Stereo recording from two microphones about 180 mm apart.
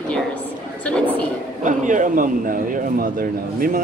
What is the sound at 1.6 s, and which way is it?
A man's voice, 45° right (ahead or behind).